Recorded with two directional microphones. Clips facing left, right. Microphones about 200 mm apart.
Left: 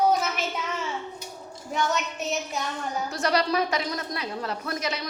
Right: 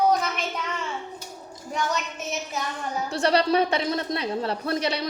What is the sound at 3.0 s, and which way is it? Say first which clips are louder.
A woman's voice: right 4 dB; 30° right (ahead or behind).